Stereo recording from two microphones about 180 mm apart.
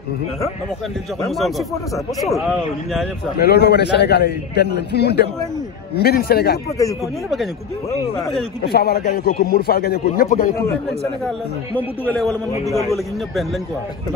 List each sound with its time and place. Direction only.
1.3 s a man's voice: centre (ahead or behind)
3.3 s a man's voice: 65° left (ahead or behind)
8.6 s a man's voice: 60° left (ahead or behind)
11.2 s a man's voice: 10° left (ahead or behind)